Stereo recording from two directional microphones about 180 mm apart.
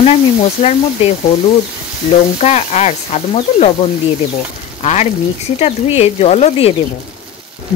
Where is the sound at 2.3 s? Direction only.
40° left (ahead or behind).